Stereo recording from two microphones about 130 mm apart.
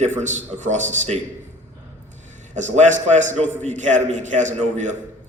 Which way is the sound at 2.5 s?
65° right (ahead or behind).